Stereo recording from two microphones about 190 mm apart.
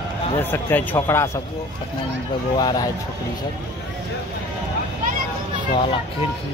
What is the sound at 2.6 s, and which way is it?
Speech, 20° left (ahead or behind).